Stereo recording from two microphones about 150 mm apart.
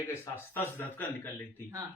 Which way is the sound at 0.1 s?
15° left (ahead or behind).